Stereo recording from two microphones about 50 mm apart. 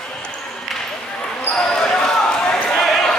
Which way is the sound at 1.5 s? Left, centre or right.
Centre.